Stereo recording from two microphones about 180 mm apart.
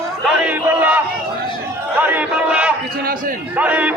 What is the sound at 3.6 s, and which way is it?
Speech, 10° right (ahead or behind).